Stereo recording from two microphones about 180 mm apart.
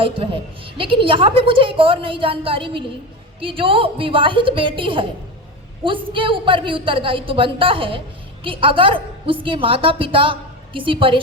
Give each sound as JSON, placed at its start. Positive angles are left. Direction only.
{"t": 0.0, "sound": "a woman's voice", "side_deg": -30}